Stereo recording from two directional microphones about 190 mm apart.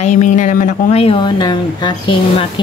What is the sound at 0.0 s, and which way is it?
A woman's voice, 40° left (ahead or behind).